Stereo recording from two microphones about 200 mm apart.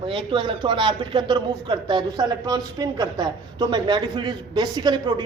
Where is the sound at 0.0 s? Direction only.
25° right (ahead or behind).